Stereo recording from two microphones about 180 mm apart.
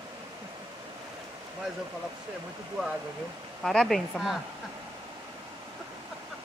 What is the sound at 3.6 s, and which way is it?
Speech, centre (ahead or behind).